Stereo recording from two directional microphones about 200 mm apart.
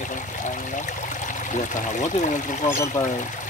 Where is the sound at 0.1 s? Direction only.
40° left (ahead or behind).